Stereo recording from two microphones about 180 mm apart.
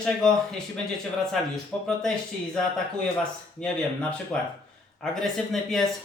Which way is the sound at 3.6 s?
5° left (ahead or behind).